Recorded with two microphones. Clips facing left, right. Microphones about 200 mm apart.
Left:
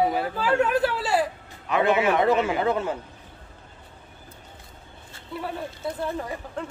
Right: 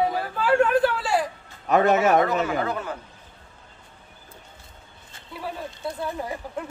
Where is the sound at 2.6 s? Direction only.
25° left (ahead or behind).